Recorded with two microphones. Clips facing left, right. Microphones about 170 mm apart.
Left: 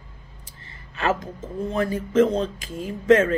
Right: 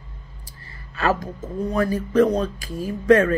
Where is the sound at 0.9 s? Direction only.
20° left (ahead or behind).